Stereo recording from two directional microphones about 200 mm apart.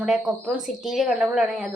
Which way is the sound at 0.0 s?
Centre (ahead or behind).